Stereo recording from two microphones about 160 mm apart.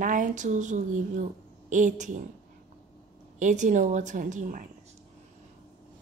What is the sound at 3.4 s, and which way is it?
Speech, 50° right (ahead or behind).